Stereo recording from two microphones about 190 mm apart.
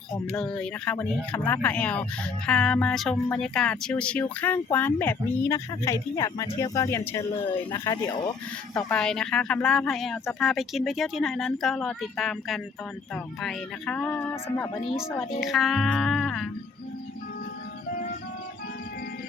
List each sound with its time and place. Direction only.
0.3 s speech: 5° left (ahead or behind)
8.9 s speech: 5° left (ahead or behind); by 14.9 s 20° left (ahead or behind)
15.4 s speech: centre (ahead or behind)
17.9 s music: 45° left (ahead or behind)